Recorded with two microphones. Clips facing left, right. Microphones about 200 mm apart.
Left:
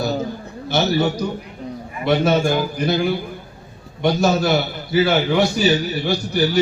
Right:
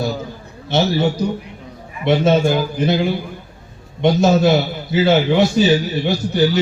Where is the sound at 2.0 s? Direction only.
25° right (ahead or behind).